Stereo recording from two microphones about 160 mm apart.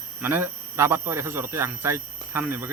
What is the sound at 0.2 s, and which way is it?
Speech, 10° right (ahead or behind).